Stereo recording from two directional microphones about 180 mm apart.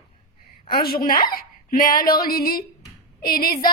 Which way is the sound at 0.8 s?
55° left (ahead or behind).